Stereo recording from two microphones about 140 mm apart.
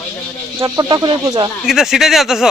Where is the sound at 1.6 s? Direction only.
5° right (ahead or behind).